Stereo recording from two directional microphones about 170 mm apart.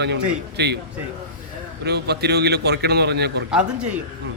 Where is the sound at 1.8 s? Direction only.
75° right (ahead or behind).